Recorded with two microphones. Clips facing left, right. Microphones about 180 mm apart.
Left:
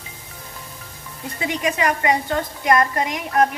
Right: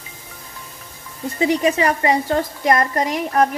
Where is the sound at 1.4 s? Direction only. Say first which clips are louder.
Right 5 dB; 35° right (ahead or behind).